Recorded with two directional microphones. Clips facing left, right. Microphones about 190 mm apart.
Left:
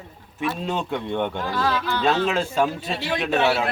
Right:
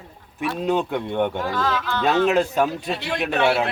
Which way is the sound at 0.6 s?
15° right (ahead or behind).